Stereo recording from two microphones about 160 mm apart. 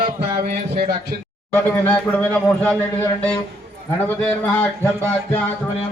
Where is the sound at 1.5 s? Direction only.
10° left (ahead or behind).